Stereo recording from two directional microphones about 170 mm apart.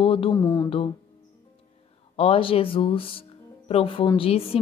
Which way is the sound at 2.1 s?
35° left (ahead or behind).